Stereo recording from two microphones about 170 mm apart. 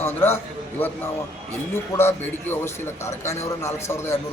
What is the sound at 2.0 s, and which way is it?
A man's voice, 15° left (ahead or behind).